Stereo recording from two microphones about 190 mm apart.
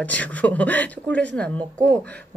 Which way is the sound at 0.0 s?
10° left (ahead or behind).